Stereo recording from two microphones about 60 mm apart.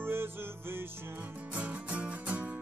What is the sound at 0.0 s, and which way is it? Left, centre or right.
Music, right.